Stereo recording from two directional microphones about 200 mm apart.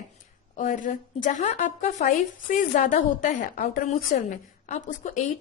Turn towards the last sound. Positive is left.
turn(degrees=40)  # may be behind; listen again after turning